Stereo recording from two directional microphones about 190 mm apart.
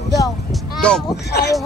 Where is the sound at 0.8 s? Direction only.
5° left (ahead or behind).